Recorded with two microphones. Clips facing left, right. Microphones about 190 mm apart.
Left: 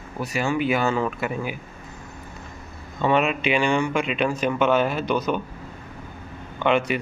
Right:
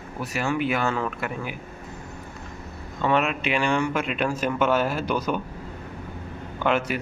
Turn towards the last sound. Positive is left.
turn(degrees=-5)  # may be behind; listen again after turning